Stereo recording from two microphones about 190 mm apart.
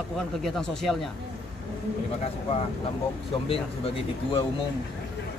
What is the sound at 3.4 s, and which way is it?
Speech, 30° left (ahead or behind).